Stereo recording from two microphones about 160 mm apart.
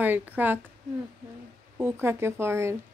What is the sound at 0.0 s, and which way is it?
Speech, 10° right (ahead or behind).